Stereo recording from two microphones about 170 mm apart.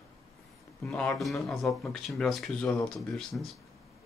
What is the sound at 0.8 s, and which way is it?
Speech, 5° left (ahead or behind).